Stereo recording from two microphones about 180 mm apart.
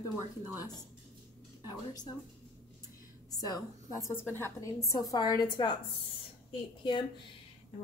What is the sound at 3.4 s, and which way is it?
A woman's voice, 20° left (ahead or behind).